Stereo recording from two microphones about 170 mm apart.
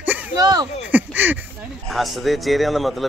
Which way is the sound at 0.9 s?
10° right (ahead or behind).